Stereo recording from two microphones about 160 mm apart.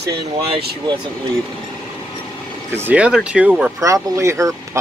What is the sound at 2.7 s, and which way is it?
Speech, 10° right (ahead or behind).